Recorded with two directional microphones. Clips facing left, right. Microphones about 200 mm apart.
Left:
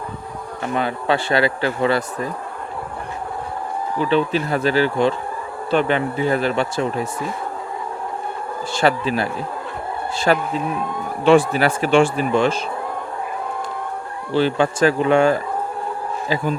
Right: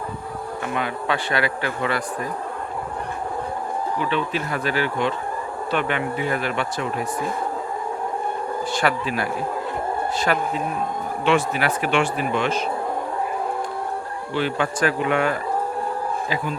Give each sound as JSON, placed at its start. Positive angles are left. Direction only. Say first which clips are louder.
{"t": 0.7, "sound": "speech", "louder": "left 5 dB", "side_deg": 30}
{"t": 3.9, "sound": "speech", "louder": "left 8 dB", "side_deg": 35}
{"t": 8.8, "sound": "speech", "louder": "left 6 dB", "side_deg": 30}
{"t": 14.3, "sound": "speech", "louder": "left 6 dB", "side_deg": 30}